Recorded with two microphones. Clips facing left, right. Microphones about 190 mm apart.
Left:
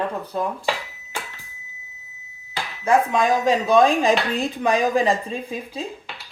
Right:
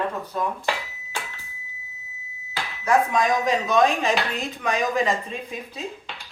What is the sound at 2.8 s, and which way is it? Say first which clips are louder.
Speech: left 2 dB; 30° left (ahead or behind).